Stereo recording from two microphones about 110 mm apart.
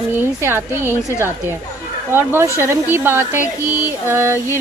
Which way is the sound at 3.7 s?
30° left (ahead or behind).